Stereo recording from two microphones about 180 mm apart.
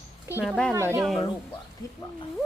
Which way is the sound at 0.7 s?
15° right (ahead or behind).